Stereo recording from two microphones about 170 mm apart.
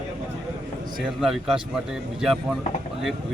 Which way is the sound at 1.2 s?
Centre (ahead or behind).